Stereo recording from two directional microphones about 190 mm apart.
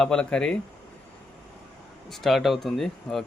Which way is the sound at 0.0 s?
5° left (ahead or behind).